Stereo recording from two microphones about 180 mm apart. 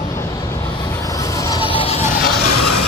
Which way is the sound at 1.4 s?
25° left (ahead or behind).